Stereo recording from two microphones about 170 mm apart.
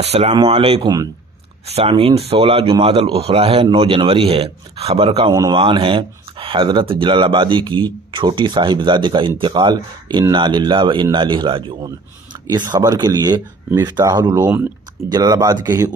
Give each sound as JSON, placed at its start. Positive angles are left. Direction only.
{"t": 0.0, "sound": "speech", "side_deg": -35}